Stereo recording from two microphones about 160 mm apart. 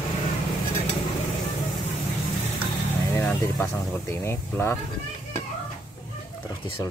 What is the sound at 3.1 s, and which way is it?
Speech, 10° left (ahead or behind).